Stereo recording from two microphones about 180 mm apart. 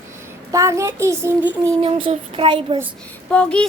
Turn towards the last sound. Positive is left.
turn(degrees=5)  # may be behind; listen again after turning